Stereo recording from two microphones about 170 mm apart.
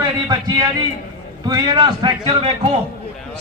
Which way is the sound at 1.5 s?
25° right (ahead or behind).